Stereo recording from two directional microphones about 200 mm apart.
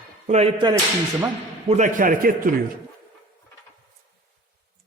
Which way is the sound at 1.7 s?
35° right (ahead or behind).